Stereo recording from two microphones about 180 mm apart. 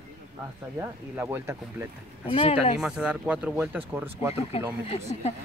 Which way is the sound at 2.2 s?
30° left (ahead or behind).